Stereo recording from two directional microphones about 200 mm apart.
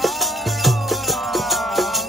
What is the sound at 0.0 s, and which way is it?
Music, centre (ahead or behind).